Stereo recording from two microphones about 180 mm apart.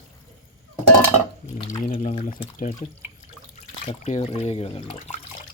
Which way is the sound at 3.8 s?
40° left (ahead or behind).